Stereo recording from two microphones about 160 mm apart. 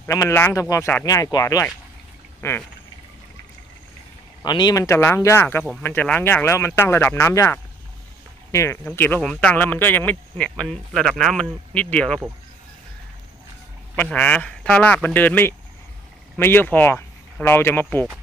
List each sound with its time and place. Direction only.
0.0 s speech: 15° left (ahead or behind)
4.4 s speech: 25° left (ahead or behind); by 12.2 s 5° left (ahead or behind)
14.1 s speech: 10° left (ahead or behind)